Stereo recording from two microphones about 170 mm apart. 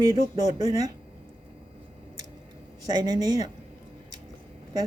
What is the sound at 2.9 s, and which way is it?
Speech, 20° right (ahead or behind).